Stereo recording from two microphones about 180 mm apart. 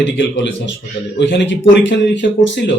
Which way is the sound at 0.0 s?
80° left.